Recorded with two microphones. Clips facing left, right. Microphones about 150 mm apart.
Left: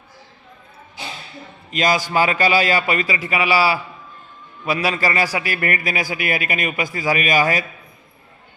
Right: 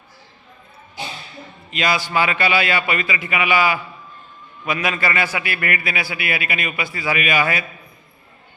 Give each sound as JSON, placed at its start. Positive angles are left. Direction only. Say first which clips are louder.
{"t": 1.7, "sound": "a man's voice", "louder": "left 2 dB", "side_deg": 40}